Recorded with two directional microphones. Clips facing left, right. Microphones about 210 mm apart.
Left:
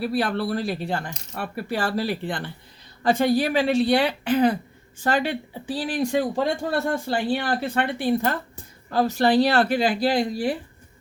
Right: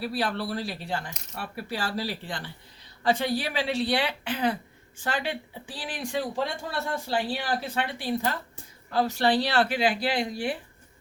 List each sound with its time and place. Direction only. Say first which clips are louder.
0.0 s speech: left 5 dB; 50° left (ahead or behind)
3.0 s speech: left 6 dB; 45° left (ahead or behind)